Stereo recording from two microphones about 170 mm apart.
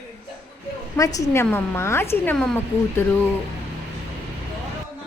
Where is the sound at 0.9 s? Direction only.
20° left (ahead or behind).